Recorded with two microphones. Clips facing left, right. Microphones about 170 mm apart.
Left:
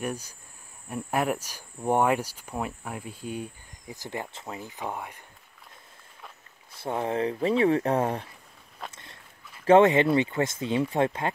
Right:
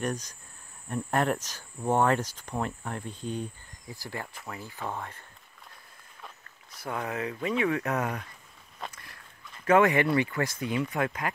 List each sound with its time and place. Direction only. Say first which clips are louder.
0.0 s speech: right 1 dB; 10° left (ahead or behind)
3.9 s speech: left 3 dB; 20° left (ahead or behind)
6.7 s speech: left 5 dB; 25° left (ahead or behind)
8.9 s walk: left 1 dB; 25° left (ahead or behind)
9.7 s speech: left 4 dB; 25° left (ahead or behind)